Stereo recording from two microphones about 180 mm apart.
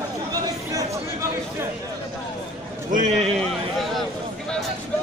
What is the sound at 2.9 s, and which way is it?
Speech, 45° right (ahead or behind).